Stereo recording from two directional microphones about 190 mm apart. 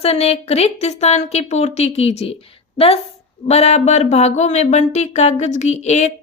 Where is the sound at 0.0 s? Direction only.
30° left (ahead or behind).